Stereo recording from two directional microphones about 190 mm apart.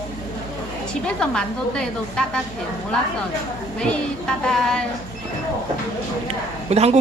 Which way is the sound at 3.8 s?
5° left (ahead or behind).